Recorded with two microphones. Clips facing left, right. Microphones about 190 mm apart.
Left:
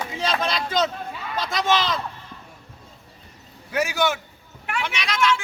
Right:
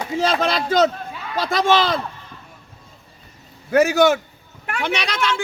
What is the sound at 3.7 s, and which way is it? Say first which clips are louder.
A woman's voice: right 9 dB; 45° right (ahead or behind).